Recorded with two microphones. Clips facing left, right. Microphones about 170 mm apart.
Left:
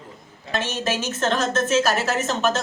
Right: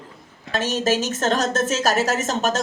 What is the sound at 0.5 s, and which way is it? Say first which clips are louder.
A woman's voice: right 4 dB; 40° right (ahead or behind).